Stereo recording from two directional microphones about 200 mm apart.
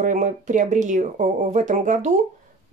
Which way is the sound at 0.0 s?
40° right (ahead or behind).